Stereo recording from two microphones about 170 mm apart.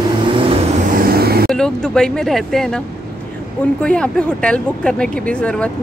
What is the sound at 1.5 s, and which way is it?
A woman's voice, 5° left (ahead or behind).